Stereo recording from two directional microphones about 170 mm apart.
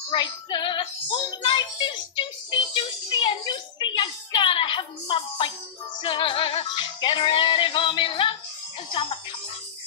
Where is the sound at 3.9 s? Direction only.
25° left (ahead or behind).